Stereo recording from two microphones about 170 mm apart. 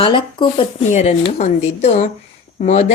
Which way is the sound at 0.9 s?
40° left (ahead or behind).